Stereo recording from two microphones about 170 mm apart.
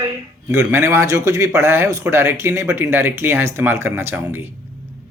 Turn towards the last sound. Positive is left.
turn(degrees=-10)  # may be behind; listen again after turning